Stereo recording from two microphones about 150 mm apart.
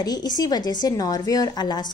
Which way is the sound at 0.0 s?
25° left (ahead or behind).